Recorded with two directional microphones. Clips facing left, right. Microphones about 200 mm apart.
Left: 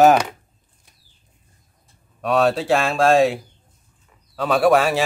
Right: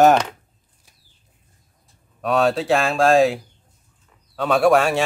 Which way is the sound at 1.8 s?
Centre (ahead or behind).